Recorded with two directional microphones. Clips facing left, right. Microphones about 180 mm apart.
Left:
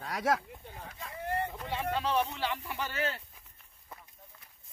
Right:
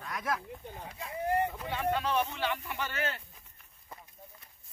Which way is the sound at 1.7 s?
30° left (ahead or behind).